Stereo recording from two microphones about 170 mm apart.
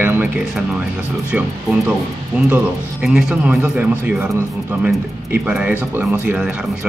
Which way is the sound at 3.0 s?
5° right (ahead or behind).